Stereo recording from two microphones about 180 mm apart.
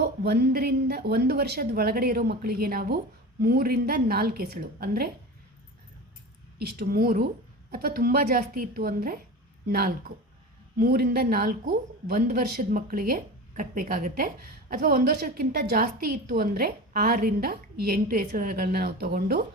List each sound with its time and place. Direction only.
0.0 s a woman's voice: 60° right (ahead or behind)
6.6 s a woman's voice: 60° right (ahead or behind)